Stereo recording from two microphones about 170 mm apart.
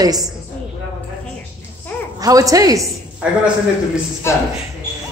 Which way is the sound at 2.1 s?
20° right (ahead or behind).